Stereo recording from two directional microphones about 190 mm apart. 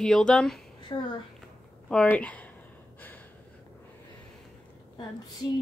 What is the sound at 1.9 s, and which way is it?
Speech, 5° left (ahead or behind).